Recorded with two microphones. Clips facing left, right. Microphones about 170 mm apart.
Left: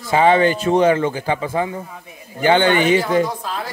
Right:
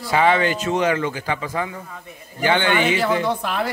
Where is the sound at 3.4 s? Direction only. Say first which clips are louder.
Right 3 dB; 70° right (ahead or behind).